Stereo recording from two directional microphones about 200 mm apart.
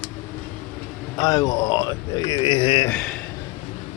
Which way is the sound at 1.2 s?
20° left (ahead or behind).